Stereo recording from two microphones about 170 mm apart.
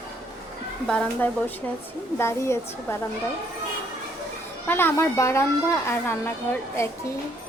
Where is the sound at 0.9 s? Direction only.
10° left (ahead or behind).